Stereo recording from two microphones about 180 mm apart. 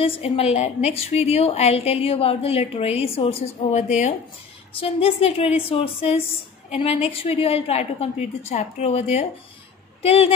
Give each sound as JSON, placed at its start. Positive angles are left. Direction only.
{"t": 0.0, "sound": "a woman's voice", "side_deg": 30}